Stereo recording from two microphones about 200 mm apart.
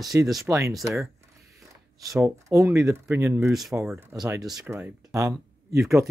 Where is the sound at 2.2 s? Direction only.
15° right (ahead or behind).